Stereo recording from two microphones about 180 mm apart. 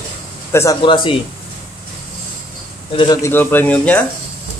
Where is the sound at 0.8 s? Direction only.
25° left (ahead or behind).